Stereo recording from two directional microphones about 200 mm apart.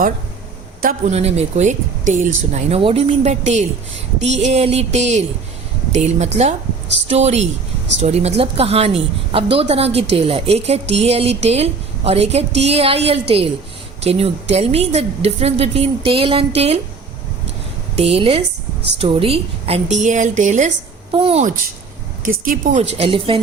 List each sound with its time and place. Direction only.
0.8 s a woman's voice: 40° right (ahead or behind)
17.9 s a woman's voice: 30° right (ahead or behind)
22.2 s a woman's voice: 40° right (ahead or behind)
23.0 s speech: 25° right (ahead or behind)